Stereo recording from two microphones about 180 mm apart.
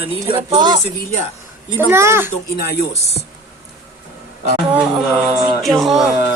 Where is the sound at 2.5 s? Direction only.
60° left (ahead or behind).